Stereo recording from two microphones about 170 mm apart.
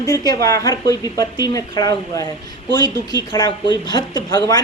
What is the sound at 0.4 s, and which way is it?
Speech, 20° left (ahead or behind).